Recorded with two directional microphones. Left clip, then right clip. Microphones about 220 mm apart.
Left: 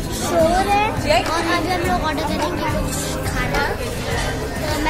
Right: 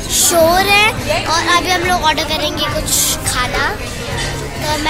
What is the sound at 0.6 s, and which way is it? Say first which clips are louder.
Speech: right 6 dB; 10° right (ahead or behind).